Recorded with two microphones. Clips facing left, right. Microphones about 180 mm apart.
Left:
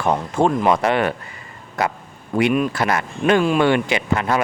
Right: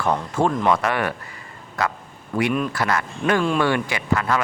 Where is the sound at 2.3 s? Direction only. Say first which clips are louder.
Left 4 dB; 20° left (ahead or behind).